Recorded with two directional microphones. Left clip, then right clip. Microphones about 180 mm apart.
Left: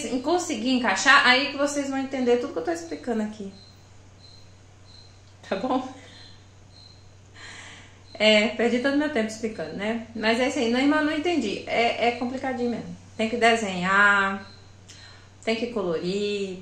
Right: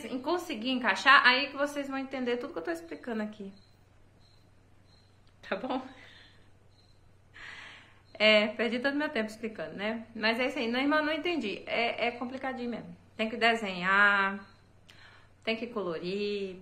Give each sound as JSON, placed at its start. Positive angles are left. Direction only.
{"t": 0.2, "sound": "speech", "side_deg": -25}
{"t": 5.4, "sound": "speech", "side_deg": -20}
{"t": 8.2, "sound": "speech", "side_deg": -25}
{"t": 15.4, "sound": "speech", "side_deg": -25}